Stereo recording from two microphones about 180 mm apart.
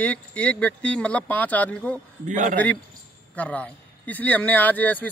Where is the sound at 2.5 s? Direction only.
10° left (ahead or behind).